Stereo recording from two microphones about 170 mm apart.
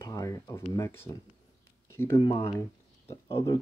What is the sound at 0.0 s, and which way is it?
Speech, 20° left (ahead or behind).